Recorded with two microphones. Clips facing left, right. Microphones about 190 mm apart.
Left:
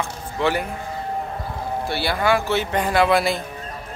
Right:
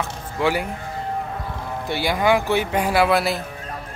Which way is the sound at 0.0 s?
10° right (ahead or behind).